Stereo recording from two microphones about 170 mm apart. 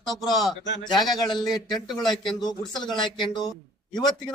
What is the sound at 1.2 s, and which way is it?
Speech, 25° left (ahead or behind).